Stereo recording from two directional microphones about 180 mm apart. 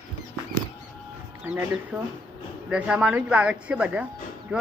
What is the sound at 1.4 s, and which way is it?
Speech, 10° right (ahead or behind).